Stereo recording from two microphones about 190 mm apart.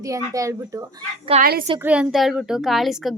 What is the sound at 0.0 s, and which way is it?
Speech, 15° right (ahead or behind).